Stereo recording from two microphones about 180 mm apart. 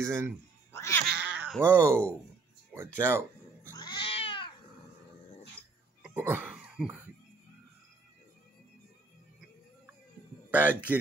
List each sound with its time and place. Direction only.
0.0 s speech: 15° right (ahead or behind)
0.7 s cat: 15° left (ahead or behind)
1.3 s speech: 5° right (ahead or behind)
3.7 s cat: 25° left (ahead or behind)
6.0 s cough: 10° right (ahead or behind)
10.5 s speech: 10° right (ahead or behind)